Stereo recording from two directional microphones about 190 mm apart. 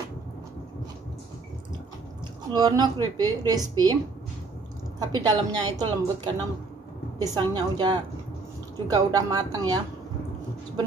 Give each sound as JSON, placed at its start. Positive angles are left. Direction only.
{"t": 2.5, "sound": "a woman's voice", "side_deg": -20}
{"t": 5.1, "sound": "a woman's voice", "side_deg": -20}